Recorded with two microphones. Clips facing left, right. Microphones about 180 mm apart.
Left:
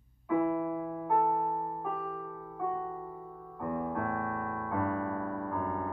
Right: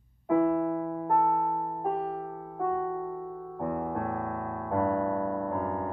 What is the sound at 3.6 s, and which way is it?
Music, 50° right (ahead or behind).